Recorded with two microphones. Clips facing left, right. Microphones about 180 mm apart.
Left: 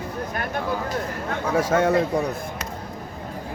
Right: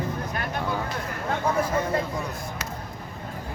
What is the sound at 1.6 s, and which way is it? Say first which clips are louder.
Speech: left 5 dB; 85° left.